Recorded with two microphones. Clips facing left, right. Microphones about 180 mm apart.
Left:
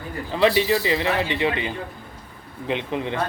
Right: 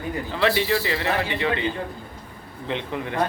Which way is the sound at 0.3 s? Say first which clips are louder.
Left 3 dB; 20° left (ahead or behind).